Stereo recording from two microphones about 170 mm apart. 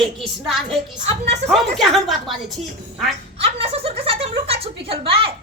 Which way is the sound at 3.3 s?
35° right (ahead or behind).